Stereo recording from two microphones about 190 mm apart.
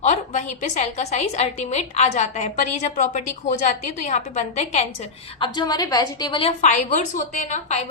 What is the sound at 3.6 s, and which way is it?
A woman's voice, 40° left (ahead or behind).